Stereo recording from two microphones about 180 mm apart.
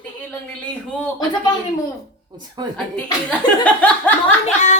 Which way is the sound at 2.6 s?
25° right (ahead or behind).